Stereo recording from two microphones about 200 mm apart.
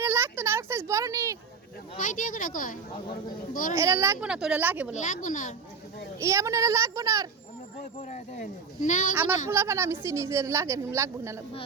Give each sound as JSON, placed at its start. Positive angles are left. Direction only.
{"t": 0.0, "sound": "a sound", "side_deg": -15}
{"t": 2.0, "sound": "speech", "side_deg": 40}
{"t": 3.8, "sound": "a woman's voice", "side_deg": -15}
{"t": 4.9, "sound": "speech", "side_deg": 40}
{"t": 6.1, "sound": "a woman's voice", "side_deg": -15}
{"t": 7.9, "sound": "speech", "side_deg": 35}
{"t": 9.5, "sound": "a woman's voice", "side_deg": -15}